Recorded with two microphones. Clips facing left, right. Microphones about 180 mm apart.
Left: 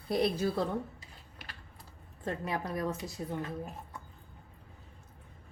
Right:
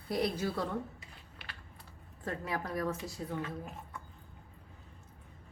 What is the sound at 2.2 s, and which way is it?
A woman's voice, 20° left (ahead or behind).